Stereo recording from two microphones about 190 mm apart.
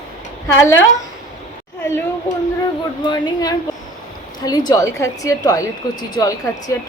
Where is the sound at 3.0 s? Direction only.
20° left (ahead or behind).